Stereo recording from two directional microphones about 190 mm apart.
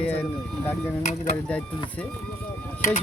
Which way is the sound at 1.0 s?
40° left (ahead or behind).